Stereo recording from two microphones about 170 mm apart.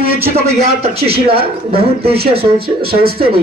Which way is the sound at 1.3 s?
65° right (ahead or behind).